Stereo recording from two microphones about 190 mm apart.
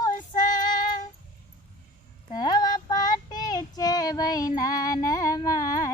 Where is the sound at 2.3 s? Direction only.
20° left (ahead or behind).